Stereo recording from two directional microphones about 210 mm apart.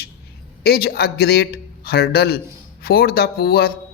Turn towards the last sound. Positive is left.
turn(degrees=50)  # may be behind; listen again after turning